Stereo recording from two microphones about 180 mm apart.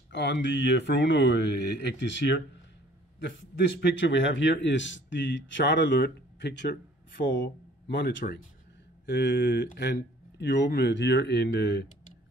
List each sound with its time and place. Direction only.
0.1 s speech: 85° left
3.8 s speech: 80° left
7.4 s speech: 75° left (ahead or behind)